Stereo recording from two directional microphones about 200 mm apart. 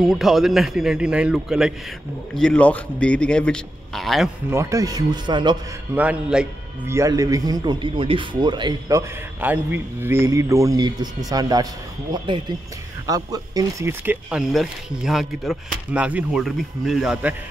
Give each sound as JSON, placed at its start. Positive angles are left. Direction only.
{"t": 0.0, "sound": "speech", "side_deg": 0}
{"t": 4.5, "sound": "speech", "side_deg": -15}
{"t": 5.9, "sound": "speech", "side_deg": -5}